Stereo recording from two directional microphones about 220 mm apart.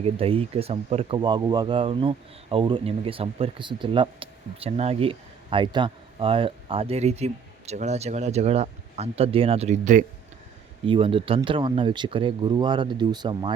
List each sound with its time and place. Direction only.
0.0 s speech: 25° right (ahead or behind)
10.8 s speech: 25° right (ahead or behind)